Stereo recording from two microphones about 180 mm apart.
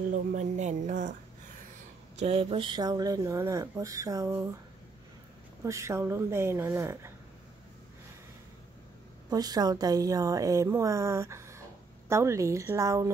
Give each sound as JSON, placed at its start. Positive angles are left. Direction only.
{"t": 0.1, "sound": "speech", "side_deg": -40}
{"t": 2.1, "sound": "speech", "side_deg": -35}
{"t": 5.6, "sound": "a woman's voice", "side_deg": -15}
{"t": 9.3, "sound": "a woman's voice", "side_deg": -20}